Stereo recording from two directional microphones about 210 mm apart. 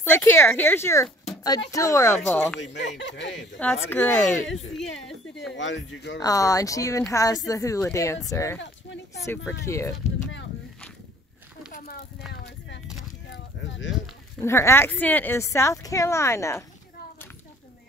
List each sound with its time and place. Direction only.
0.0 s a woman's voice: 10° left (ahead or behind)
2.6 s speech: 55° left (ahead or behind)
3.5 s a woman's voice: 10° left (ahead or behind)
5.5 s speech: 60° left (ahead or behind)
6.1 s a woman's voice: 15° left (ahead or behind)
8.8 s speech: 60° left (ahead or behind)
9.7 s a woman's voice: 15° left (ahead or behind)
13.3 s a sound: 60° left (ahead or behind)
14.4 s a woman's voice: 10° left (ahead or behind)